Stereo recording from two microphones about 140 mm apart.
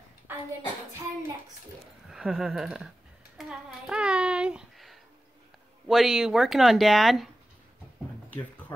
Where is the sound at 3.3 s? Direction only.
5° right (ahead or behind).